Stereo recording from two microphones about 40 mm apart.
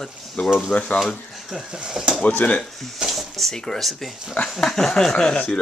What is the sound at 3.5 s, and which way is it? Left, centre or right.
Speech, centre.